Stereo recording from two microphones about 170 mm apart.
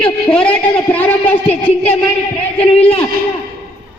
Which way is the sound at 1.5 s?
35° left (ahead or behind).